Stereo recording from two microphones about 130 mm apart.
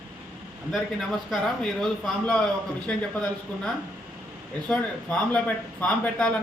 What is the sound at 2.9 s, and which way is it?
Speech, 10° left (ahead or behind).